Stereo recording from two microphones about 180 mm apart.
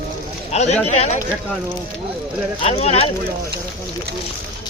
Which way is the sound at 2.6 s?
35° left (ahead or behind).